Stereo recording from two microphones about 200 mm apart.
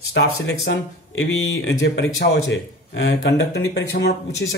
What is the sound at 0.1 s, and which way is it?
A man's voice, 65° left (ahead or behind).